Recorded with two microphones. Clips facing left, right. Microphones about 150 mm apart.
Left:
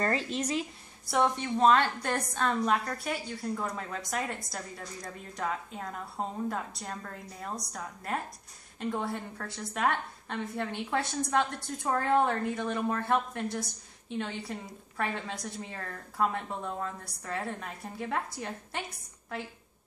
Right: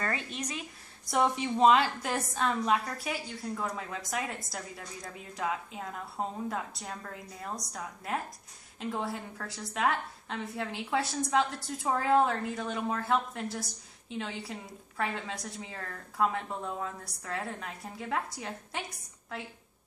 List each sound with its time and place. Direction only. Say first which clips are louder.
0.0 s speech: left 5 dB; 30° left (ahead or behind)
1.0 s a woman's voice: even; centre (ahead or behind)